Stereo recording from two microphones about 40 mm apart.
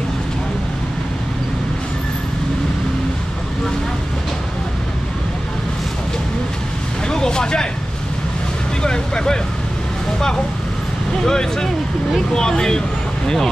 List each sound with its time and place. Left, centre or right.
7.1 s vehicle: centre
8.8 s vehicle: centre
11.2 s vehicle: centre
12.4 s a sound: centre